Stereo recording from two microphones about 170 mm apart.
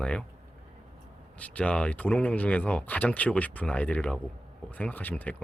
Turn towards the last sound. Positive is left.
turn(degrees=10)  # may be behind; listen again after turning